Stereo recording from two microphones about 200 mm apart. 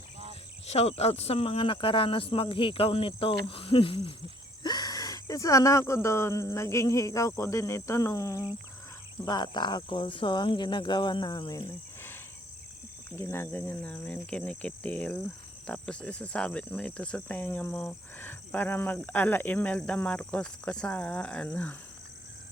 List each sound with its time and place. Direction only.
0.7 s speech: 30° left (ahead or behind)
4.6 s cricket: 20° left (ahead or behind)
9.2 s speech: 20° left (ahead or behind)
13.1 s cricket: 15° left (ahead or behind)